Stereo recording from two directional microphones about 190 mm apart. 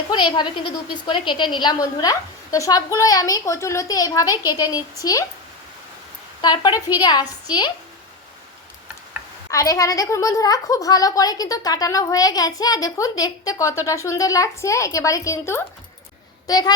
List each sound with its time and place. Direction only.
0.1 s a woman's voice: 25° left (ahead or behind)
6.4 s a woman's voice: 20° left (ahead or behind)
9.5 s a woman's voice: 15° left (ahead or behind)